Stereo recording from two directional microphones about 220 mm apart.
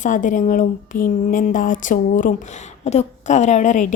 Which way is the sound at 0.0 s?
35° left (ahead or behind).